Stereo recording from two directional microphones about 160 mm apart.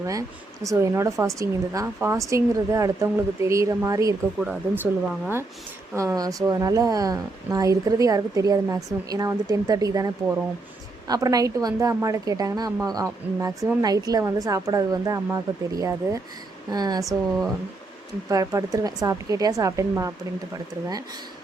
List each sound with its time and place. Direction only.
0.0 s a woman's voice: 20° right (ahead or behind)
4.4 s a woman's voice: 10° right (ahead or behind)
11.1 s a woman's voice: 20° right (ahead or behind)
18.3 s a woman's voice: 20° right (ahead or behind)